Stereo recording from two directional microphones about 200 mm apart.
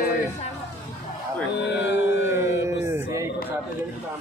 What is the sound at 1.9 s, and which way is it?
Music, 10° right (ahead or behind).